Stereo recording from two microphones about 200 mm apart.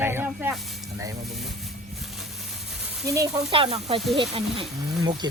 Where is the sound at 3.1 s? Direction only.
15° right (ahead or behind).